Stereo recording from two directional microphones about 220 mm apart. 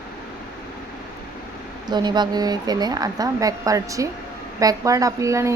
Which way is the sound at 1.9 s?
20° right (ahead or behind).